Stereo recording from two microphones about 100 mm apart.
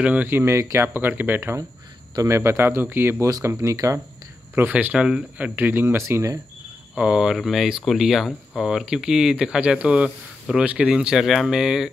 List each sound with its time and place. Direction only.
0.0 s speech: 15° right (ahead or behind)
3.3 s speech: 35° right (ahead or behind)
4.6 s speech: 15° right (ahead or behind)
7.0 s speech: 5° right (ahead or behind)